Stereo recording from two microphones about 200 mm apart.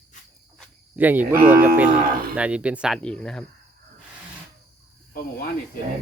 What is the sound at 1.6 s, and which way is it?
Speech, 10° right (ahead or behind).